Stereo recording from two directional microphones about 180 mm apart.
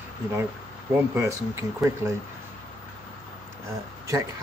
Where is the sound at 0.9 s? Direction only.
15° right (ahead or behind).